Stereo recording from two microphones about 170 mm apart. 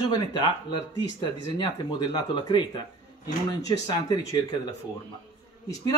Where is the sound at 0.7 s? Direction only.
25° left (ahead or behind).